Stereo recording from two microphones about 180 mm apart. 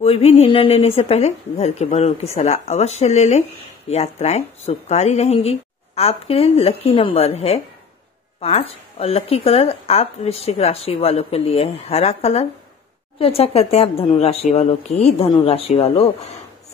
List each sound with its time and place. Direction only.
0.0 s speech: 35° left (ahead or behind)